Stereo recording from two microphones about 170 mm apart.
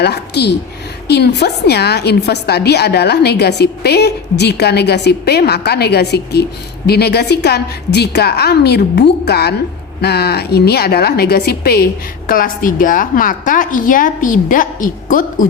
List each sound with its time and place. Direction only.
0.0 s a woman's voice: 75° left (ahead or behind)
12.3 s a woman's voice: 55° left (ahead or behind)